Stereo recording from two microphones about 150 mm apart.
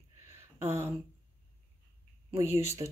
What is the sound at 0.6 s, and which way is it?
Speech, 15° right (ahead or behind).